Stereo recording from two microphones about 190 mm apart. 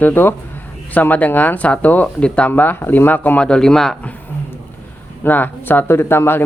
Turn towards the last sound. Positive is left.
turn(degrees=10)  # may be behind; listen again after turning